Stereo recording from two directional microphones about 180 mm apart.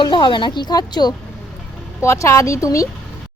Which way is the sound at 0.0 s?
25° left (ahead or behind).